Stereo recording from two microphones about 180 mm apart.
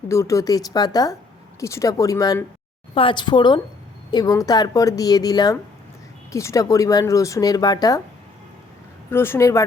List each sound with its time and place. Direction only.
0.1 s speech: 15° left (ahead or behind)
9.0 s speech: 15° left (ahead or behind)